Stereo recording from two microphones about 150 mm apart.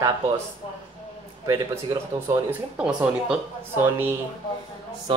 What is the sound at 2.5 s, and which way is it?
Speech, 5° right (ahead or behind).